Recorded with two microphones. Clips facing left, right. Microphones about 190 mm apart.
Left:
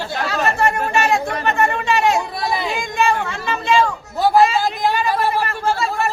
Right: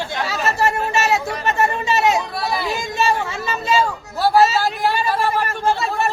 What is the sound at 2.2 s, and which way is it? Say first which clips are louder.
Speech: left 1 dB; 10° left (ahead or behind).